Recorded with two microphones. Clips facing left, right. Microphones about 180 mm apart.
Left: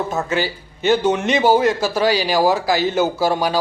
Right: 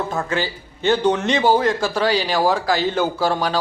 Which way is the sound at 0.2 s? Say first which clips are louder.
Left 2 dB; 15° left (ahead or behind).